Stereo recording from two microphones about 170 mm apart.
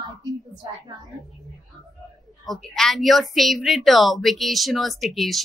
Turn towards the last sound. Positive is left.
turn(degrees=0)  # may be behind; listen again after turning